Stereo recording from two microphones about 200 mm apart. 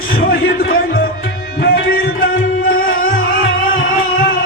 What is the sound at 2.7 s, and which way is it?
Music, 45° left (ahead or behind).